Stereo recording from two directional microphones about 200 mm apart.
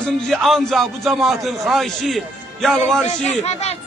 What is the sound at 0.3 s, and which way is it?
A man's voice, centre (ahead or behind).